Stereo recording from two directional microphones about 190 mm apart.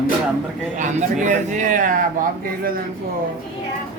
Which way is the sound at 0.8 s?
40° right (ahead or behind).